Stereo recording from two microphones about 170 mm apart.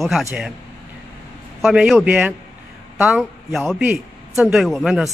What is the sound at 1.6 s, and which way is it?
Speech, centre (ahead or behind).